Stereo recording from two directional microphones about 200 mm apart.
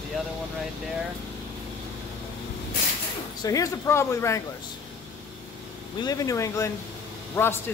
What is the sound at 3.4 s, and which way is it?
Speech, 15° left (ahead or behind).